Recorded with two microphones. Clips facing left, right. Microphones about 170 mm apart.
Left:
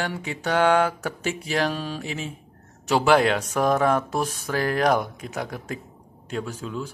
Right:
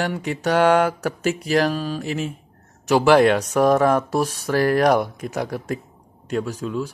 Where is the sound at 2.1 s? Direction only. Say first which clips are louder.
Right 6 dB; 60° right (ahead or behind).